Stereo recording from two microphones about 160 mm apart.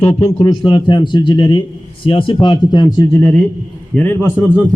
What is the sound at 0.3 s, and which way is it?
Speech, 30° left (ahead or behind).